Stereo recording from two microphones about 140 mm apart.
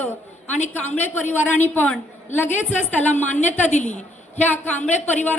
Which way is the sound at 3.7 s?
60° left (ahead or behind).